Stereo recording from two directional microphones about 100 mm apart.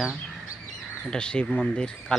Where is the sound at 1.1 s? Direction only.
10° left (ahead or behind).